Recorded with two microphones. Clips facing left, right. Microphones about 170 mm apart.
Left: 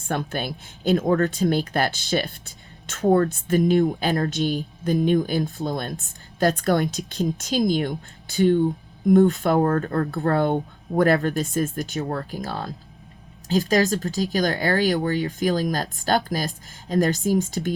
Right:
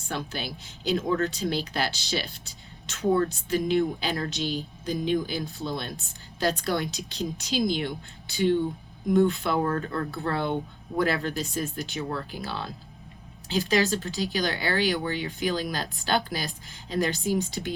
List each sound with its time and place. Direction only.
0.1 s speech: 55° left (ahead or behind)